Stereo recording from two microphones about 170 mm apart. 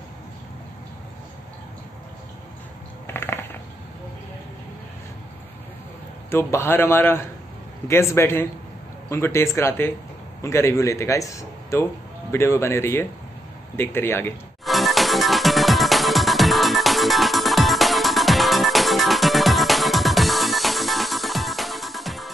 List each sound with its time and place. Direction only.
3.1 s a sound: 15° left (ahead or behind)
6.3 s speech: 15° left (ahead or behind)
14.6 s music: centre (ahead or behind)